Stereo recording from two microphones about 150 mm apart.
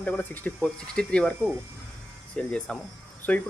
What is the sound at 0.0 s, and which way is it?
Speech, 10° left (ahead or behind).